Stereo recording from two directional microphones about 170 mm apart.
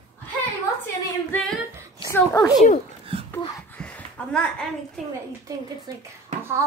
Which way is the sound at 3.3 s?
10° left (ahead or behind).